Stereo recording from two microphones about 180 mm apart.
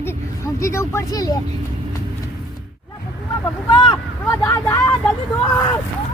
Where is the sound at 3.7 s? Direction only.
25° left (ahead or behind).